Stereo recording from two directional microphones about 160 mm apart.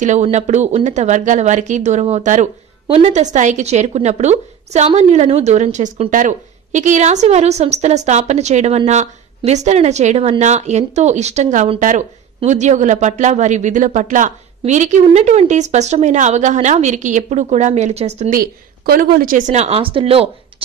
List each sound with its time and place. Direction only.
0.0 s speech: 45° right (ahead or behind)
18.3 s speech: 65° right (ahead or behind); by 20.6 s 35° right (ahead or behind)